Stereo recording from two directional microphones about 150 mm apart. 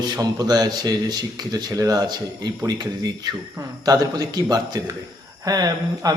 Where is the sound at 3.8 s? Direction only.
25° right (ahead or behind).